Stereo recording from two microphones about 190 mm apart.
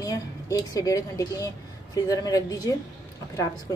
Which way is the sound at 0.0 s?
20° left (ahead or behind).